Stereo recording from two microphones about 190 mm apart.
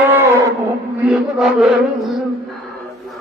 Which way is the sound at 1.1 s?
Centre (ahead or behind).